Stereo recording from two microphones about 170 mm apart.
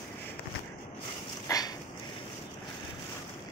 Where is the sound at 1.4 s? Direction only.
20° left (ahead or behind).